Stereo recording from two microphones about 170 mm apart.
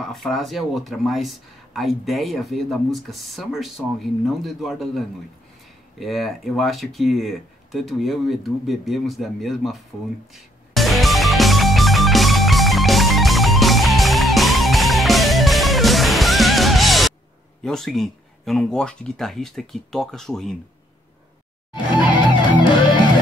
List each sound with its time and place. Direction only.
0.0 s speech: centre (ahead or behind)
10.3 s music: centre (ahead or behind)
17.6 s speech: centre (ahead or behind)
21.9 s music: 25° left (ahead or behind)